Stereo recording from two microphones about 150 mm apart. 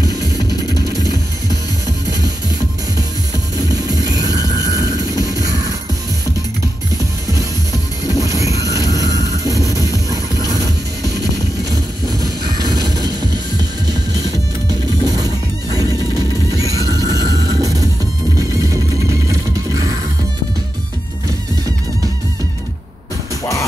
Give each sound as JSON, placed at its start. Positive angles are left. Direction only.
{"t": 0.0, "sound": "music", "side_deg": 25}
{"t": 3.5, "sound": "music", "side_deg": -25}
{"t": 7.0, "sound": "music", "side_deg": -20}
{"t": 11.7, "sound": "music", "side_deg": -25}